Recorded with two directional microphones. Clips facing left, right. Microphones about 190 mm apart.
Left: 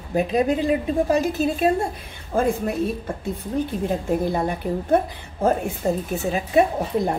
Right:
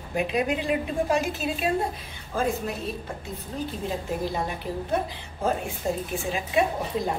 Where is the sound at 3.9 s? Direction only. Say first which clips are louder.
Left 5 dB; 50° left (ahead or behind).